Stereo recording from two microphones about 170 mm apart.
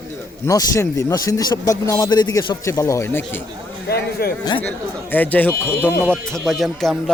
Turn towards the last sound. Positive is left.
turn(degrees=0)  # may be behind; listen again after turning